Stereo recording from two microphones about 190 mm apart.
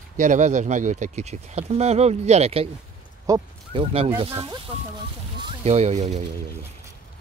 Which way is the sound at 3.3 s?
15° right (ahead or behind).